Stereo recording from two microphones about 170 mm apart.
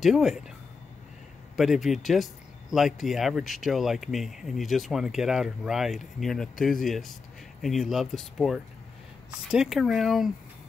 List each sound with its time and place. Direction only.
0.0 s speech: centre (ahead or behind)
1.6 s speech: centre (ahead or behind)